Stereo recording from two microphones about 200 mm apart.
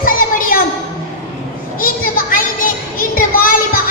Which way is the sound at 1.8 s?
45° left (ahead or behind).